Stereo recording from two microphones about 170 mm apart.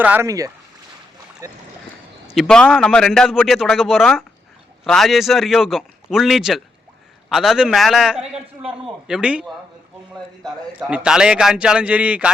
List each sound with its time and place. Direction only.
0.0 s a man's voice: 15° right (ahead or behind)
2.3 s speech: centre (ahead or behind)
10.8 s a man's voice: 5° right (ahead or behind)